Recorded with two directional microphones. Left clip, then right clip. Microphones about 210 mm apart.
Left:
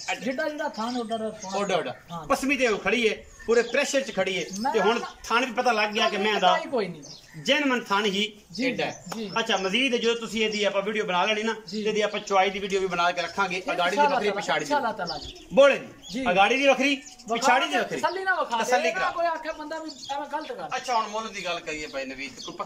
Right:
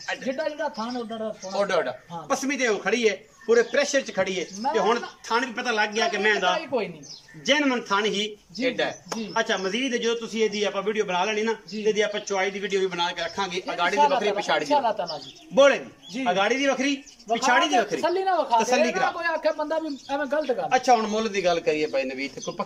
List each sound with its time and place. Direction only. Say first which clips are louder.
0.0 s speech: even; centre (ahead or behind)
14.7 s speech: right 3 dB; 10° right (ahead or behind)
15.5 s speech: even; 5° left (ahead or behind)
18.0 s speech: right 2 dB; 20° right (ahead or behind)
19.4 s speech: right 8 dB; 55° right (ahead or behind)